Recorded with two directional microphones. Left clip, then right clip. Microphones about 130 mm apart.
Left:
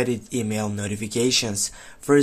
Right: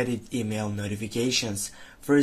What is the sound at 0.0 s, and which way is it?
Speech, 30° left (ahead or behind).